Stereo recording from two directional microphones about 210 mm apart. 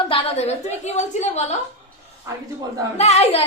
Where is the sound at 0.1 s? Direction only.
30° left (ahead or behind).